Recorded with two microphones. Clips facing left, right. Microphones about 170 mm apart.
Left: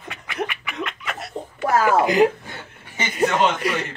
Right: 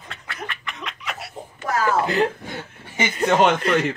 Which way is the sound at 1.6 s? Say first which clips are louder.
Left 4 dB; 65° left (ahead or behind).